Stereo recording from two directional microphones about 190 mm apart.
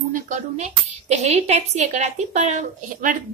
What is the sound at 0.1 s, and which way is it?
Speech, 40° right (ahead or behind).